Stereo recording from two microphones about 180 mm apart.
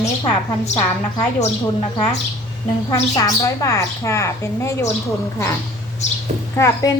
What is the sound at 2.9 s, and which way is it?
A woman's voice, 20° left (ahead or behind).